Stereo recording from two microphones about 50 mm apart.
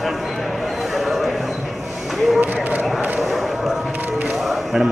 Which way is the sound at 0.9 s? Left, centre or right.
Centre.